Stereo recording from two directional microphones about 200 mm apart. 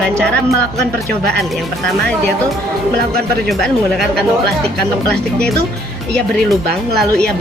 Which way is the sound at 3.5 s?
Centre (ahead or behind).